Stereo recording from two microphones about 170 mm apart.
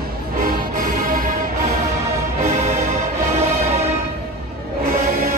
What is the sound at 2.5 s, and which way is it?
Music, 40° right (ahead or behind).